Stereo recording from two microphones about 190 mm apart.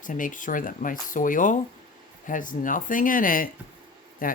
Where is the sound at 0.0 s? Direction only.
45° left (ahead or behind).